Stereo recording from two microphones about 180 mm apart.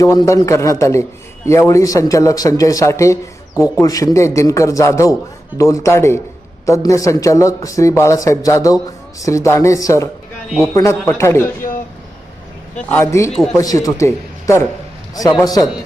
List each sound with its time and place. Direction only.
0.0 s a man's voice: 20° left (ahead or behind)
12.7 s a man's voice: 15° left (ahead or behind)
13.3 s speech: centre (ahead or behind)
13.6 s a man's voice: 20° left (ahead or behind)